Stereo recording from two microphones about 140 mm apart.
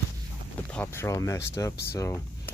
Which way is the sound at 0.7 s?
15° left (ahead or behind).